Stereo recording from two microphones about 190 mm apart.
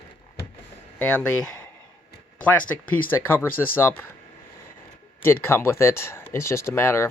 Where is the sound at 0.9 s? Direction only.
5° left (ahead or behind).